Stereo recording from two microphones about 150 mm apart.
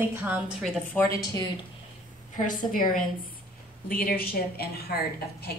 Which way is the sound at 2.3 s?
60° left (ahead or behind).